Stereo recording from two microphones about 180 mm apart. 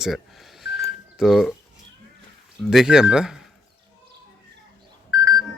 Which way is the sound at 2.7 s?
5° right (ahead or behind).